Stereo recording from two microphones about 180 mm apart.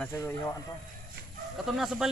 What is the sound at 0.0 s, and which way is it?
Speech, 10° left (ahead or behind).